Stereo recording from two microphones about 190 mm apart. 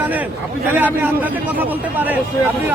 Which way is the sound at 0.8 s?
10° right (ahead or behind).